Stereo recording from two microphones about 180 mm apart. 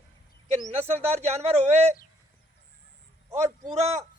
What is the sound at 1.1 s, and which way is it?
Speech, 35° right (ahead or behind).